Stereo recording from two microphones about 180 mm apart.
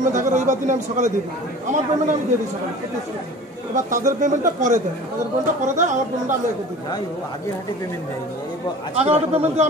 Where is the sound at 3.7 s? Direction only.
45° right (ahead or behind).